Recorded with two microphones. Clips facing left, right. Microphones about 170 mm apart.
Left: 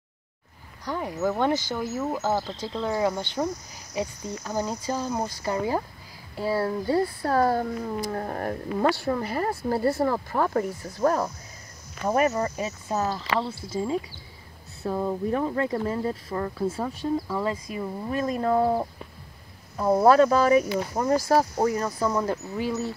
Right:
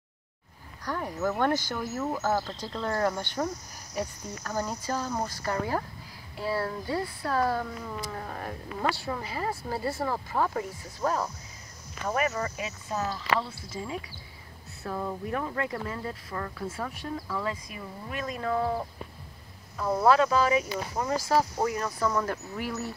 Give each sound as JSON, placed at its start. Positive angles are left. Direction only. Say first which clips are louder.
{"t": 0.8, "sound": "cricket", "louder": "left 3 dB", "side_deg": 10}
{"t": 6.3, "sound": "speech", "louder": "left 5 dB", "side_deg": 30}
{"t": 12.1, "sound": "speech", "louder": "left 6 dB", "side_deg": 35}
{"t": 14.8, "sound": "speech", "louder": "left 6 dB", "side_deg": 25}
{"t": 20.1, "sound": "speech", "louder": "left 4 dB", "side_deg": 45}
{"t": 21.8, "sound": "speech", "louder": "left 3 dB", "side_deg": 25}